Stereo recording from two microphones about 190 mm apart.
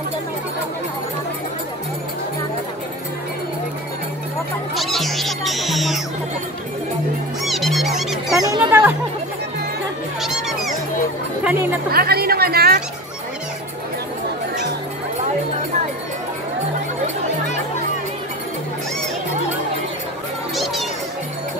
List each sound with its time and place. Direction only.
4.7 s music: centre (ahead or behind)
7.4 s music: centre (ahead or behind)
8.4 s children playing: 15° right (ahead or behind)
11.9 s a sound: 55° right (ahead or behind)
20.5 s music: centre (ahead or behind)